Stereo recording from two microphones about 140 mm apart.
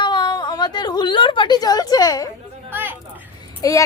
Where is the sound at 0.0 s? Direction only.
35° left (ahead or behind).